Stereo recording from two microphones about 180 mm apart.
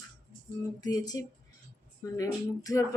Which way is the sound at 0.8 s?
20° left (ahead or behind).